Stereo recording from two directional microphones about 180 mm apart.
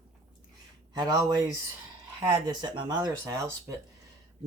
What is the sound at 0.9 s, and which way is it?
Speech, 20° right (ahead or behind).